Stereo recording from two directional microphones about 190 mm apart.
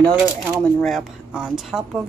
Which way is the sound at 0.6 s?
Centre (ahead or behind).